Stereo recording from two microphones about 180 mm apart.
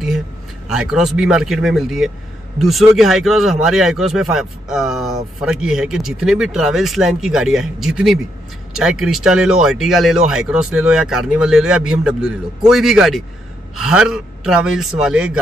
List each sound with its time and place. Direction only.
0.7 s speech: 5° right (ahead or behind)